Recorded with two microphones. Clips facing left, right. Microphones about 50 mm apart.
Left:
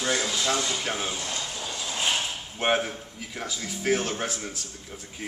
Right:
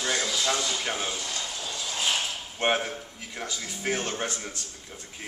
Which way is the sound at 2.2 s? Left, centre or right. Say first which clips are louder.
Even; centre.